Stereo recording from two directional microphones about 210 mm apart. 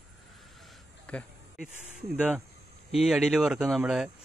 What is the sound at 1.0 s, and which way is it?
Speech, centre (ahead or behind).